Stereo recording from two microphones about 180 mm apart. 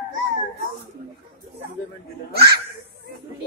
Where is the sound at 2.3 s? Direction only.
60° right (ahead or behind).